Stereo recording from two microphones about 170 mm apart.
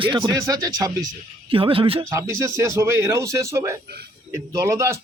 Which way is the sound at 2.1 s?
15° right (ahead or behind).